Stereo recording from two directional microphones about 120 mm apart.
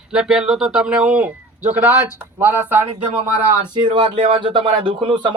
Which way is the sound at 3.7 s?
40° right (ahead or behind).